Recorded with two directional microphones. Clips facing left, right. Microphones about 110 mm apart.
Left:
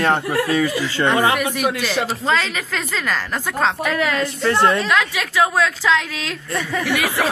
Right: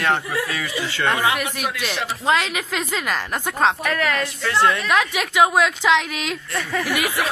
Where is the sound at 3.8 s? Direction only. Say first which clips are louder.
Left 2 dB; 15° left (ahead or behind).